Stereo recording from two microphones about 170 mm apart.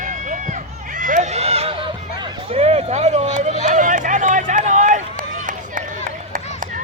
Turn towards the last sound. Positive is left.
turn(degrees=-55)  # may be behind; listen again after turning